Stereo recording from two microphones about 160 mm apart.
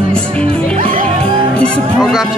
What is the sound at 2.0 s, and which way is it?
Music, centre (ahead or behind).